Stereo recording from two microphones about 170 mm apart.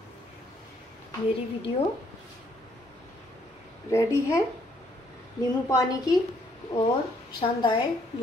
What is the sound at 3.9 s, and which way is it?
Speech, 15° left (ahead or behind).